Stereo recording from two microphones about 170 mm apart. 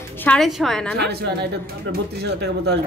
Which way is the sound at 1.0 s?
70° right (ahead or behind).